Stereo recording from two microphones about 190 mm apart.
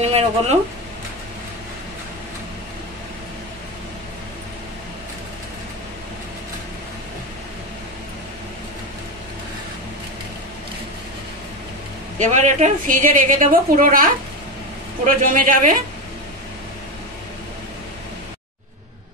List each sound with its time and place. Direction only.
0.0 s speech: 35° right (ahead or behind)
12.2 s a woman's voice: 40° right (ahead or behind)
15.0 s a woman's voice: 45° right (ahead or behind)